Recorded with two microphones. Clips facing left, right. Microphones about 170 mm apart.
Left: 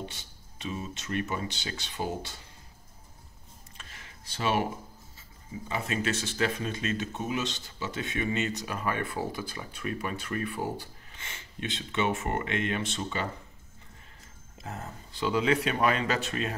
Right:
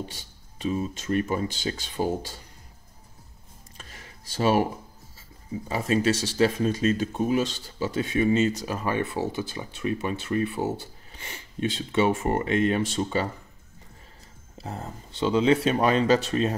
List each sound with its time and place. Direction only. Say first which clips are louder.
0.6 s speech: right 8 dB; 35° right (ahead or behind)
3.7 s a sound: right 4 dB; 40° right (ahead or behind)
5.7 s speech: right 7 dB; 35° right (ahead or behind)
11.2 s speech: right 8 dB; 35° right (ahead or behind)
14.6 s speech: right 4 dB; 30° right (ahead or behind)